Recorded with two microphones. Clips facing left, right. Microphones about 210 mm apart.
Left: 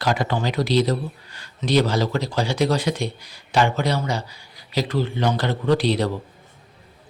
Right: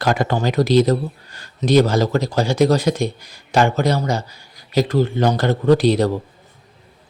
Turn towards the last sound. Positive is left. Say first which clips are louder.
# right 5 dB
turn(degrees=-45)  # may be behind; listen again after turning